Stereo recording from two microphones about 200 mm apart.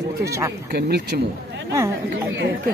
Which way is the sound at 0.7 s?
50° right (ahead or behind).